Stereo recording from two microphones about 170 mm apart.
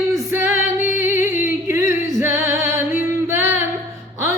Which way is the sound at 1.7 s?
15° right (ahead or behind).